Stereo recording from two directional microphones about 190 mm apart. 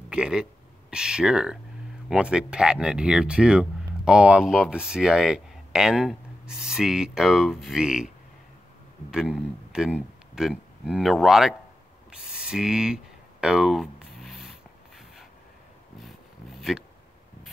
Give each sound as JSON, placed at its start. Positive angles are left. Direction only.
{"t": 0.1, "sound": "speech", "side_deg": -5}
{"t": 9.1, "sound": "speech", "side_deg": -5}
{"t": 12.1, "sound": "a sound", "side_deg": -5}